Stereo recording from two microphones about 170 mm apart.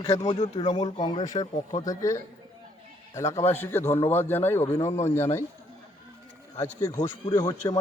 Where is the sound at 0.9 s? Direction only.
25° left (ahead or behind).